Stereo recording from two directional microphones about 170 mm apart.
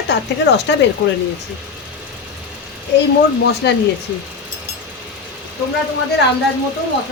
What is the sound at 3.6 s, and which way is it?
Speech, 80° left.